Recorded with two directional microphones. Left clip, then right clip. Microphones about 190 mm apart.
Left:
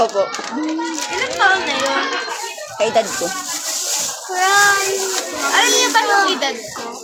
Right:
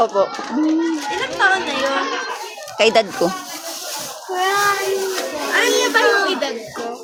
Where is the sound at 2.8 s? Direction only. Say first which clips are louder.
Right 2 dB; 50° right (ahead or behind).